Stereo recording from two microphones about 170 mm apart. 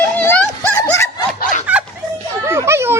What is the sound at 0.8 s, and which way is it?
Snicker, 15° left (ahead or behind).